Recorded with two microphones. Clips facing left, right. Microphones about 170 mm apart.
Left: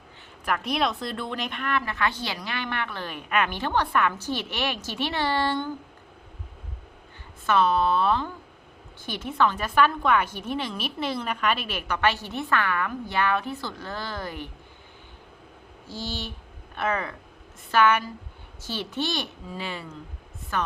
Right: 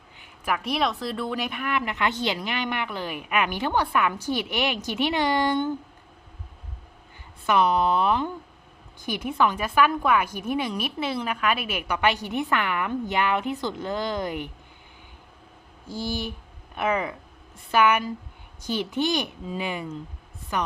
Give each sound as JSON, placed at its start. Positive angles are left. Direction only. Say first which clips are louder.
{"t": 0.2, "sound": "speech", "louder": "right 1 dB", "side_deg": -5}
{"t": 7.4, "sound": "speech", "louder": "right 1 dB", "side_deg": -15}
{"t": 15.9, "sound": "speech", "louder": "right 4 dB", "side_deg": -10}